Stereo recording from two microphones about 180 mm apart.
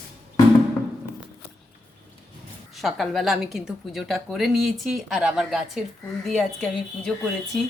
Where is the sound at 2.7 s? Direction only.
Centre (ahead or behind).